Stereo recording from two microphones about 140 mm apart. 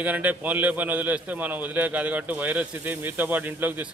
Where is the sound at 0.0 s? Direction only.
10° right (ahead or behind).